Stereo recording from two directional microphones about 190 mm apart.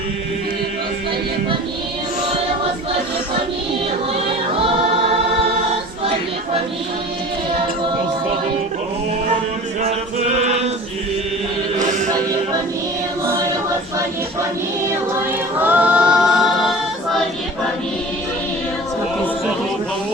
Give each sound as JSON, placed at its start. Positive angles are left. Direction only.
{"t": 10.4, "sound": "chant", "side_deg": -35}
{"t": 11.8, "sound": "music", "side_deg": -40}
{"t": 15.5, "sound": "a capella", "side_deg": -10}